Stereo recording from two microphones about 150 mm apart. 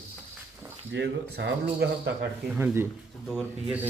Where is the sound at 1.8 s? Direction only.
90° right.